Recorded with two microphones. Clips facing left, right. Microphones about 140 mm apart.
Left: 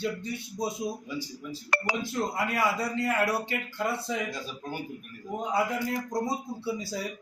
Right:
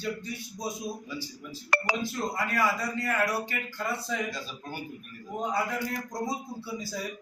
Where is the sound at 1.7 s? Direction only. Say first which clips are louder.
Right 2 dB; 90° right.